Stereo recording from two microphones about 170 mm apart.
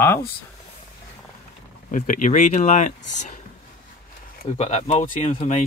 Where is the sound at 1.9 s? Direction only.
50° left (ahead or behind).